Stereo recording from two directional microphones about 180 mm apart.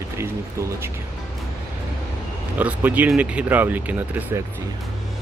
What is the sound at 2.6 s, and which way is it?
Speech, 10° right (ahead or behind).